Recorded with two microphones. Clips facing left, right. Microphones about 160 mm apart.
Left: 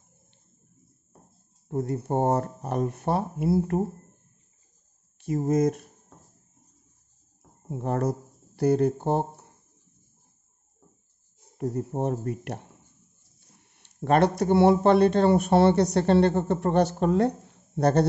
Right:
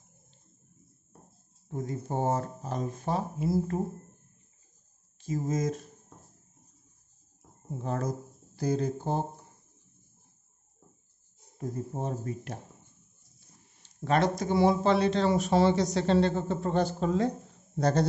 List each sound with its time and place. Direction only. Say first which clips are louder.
1.7 s speech: left 6 dB; 60° left (ahead or behind)
5.2 s speech: left 7 dB; 60° left (ahead or behind)
7.7 s speech: left 5 dB; 60° left (ahead or behind)
11.7 s speech: left 6 dB; 65° left (ahead or behind)